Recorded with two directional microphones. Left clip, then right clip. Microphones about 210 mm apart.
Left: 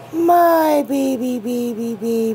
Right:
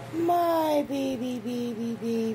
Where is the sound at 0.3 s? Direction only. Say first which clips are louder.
Left 11 dB; 45° left (ahead or behind).